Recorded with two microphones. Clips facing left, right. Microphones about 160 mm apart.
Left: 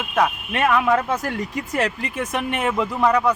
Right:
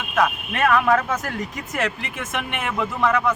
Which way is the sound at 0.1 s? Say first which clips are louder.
Even; 30° left (ahead or behind).